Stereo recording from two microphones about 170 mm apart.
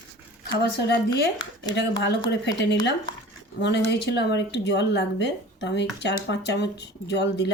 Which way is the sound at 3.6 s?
85° left.